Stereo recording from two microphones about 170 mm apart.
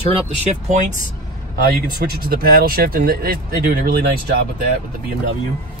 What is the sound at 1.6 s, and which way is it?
Speech, 65° right (ahead or behind).